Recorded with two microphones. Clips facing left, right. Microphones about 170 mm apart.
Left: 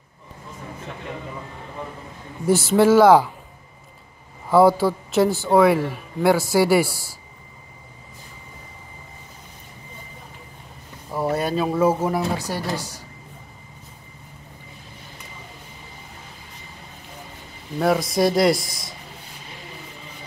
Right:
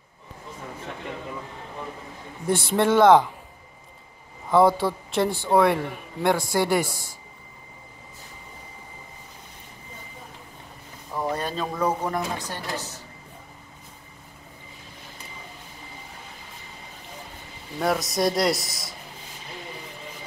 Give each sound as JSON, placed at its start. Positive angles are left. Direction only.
{"t": 2.4, "sound": "a man's voice", "side_deg": 5}
{"t": 4.5, "sound": "a man's voice", "side_deg": 5}
{"t": 11.1, "sound": "speech", "side_deg": 10}
{"t": 17.7, "sound": "a man's voice", "side_deg": 0}
{"t": 18.7, "sound": "speech", "side_deg": -25}